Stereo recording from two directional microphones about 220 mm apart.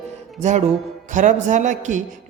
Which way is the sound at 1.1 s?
35° right (ahead or behind).